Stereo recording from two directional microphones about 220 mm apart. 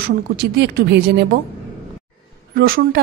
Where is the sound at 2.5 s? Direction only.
45° right (ahead or behind).